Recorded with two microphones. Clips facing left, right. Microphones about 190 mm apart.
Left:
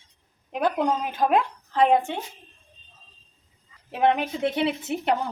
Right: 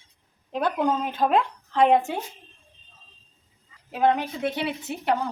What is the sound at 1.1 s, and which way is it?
Speech, 10° left (ahead or behind).